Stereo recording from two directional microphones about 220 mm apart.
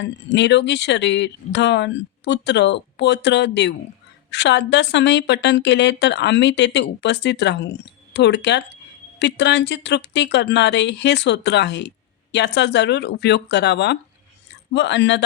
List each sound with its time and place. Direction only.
0.0 s speech: 55° left (ahead or behind)